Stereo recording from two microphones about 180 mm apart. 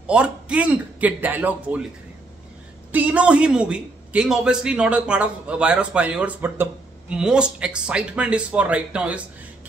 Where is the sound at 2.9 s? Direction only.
10° right (ahead or behind).